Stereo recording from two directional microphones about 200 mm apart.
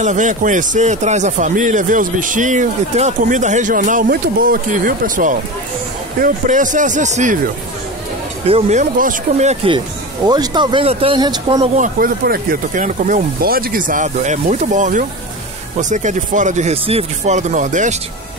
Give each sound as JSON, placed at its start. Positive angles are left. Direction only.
{"t": 0.0, "sound": "a man's voice", "side_deg": -40}
{"t": 8.5, "sound": "a man's voice", "side_deg": -30}
{"t": 10.2, "sound": "speech", "side_deg": -20}
{"t": 11.7, "sound": "a man's voice", "side_deg": -40}